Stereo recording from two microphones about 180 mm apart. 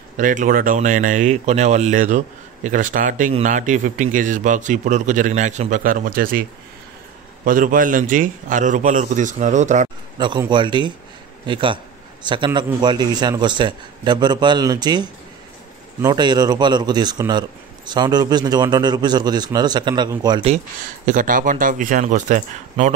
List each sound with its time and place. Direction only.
0.2 s speech: 45° right (ahead or behind)
7.4 s speech: 50° right (ahead or behind)
10.1 s a man's voice: 25° right (ahead or behind)
20.4 s speech: 45° right (ahead or behind)